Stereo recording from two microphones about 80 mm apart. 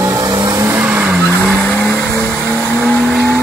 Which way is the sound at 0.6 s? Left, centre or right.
Right.